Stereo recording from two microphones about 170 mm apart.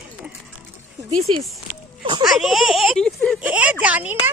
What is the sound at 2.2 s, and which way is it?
Speech, centre (ahead or behind).